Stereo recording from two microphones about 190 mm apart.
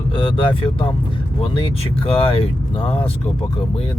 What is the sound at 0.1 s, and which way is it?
Speech, 25° left (ahead or behind).